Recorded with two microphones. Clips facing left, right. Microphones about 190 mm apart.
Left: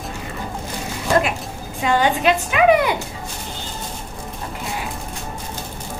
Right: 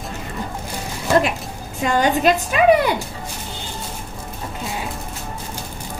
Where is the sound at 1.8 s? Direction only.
45° right (ahead or behind).